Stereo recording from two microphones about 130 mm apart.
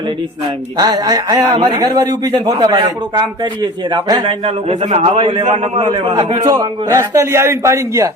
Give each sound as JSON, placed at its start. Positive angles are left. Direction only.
{"t": 0.8, "sound": "a man's voice", "side_deg": -30}